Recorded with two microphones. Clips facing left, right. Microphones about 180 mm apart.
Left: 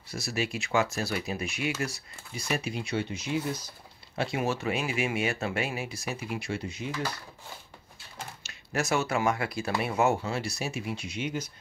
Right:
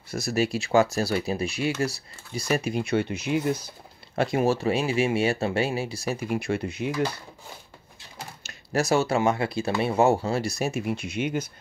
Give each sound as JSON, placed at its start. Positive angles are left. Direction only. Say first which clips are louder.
{"t": 0.1, "sound": "speech", "louder": "right 7 dB", "side_deg": -45}
{"t": 2.5, "sound": "speech", "louder": "right 6 dB", "side_deg": -50}
{"t": 4.1, "sound": "speech", "louder": "right 7 dB", "side_deg": -45}
{"t": 6.3, "sound": "speech", "louder": "right 7 dB", "side_deg": -55}
{"t": 8.5, "sound": "speech", "louder": "right 6 dB", "side_deg": -35}